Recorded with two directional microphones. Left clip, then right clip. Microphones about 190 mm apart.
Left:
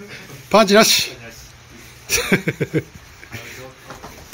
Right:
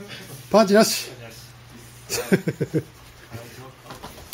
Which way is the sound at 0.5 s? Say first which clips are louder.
Left 4 dB; centre (ahead or behind).